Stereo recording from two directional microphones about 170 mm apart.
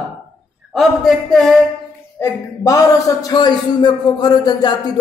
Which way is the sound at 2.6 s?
20° left (ahead or behind).